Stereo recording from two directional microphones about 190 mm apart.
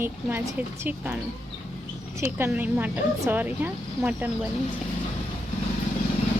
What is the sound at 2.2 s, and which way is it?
A woman's voice, 15° right (ahead or behind).